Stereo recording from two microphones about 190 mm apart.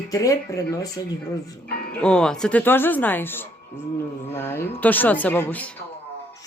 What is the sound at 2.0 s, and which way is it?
Speech, 5° left (ahead or behind).